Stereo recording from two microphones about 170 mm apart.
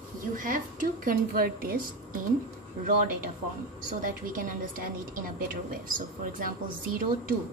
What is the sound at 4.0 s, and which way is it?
Speech, 55° right (ahead or behind).